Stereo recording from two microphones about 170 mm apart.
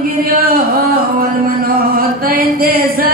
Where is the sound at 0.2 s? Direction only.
60° right (ahead or behind).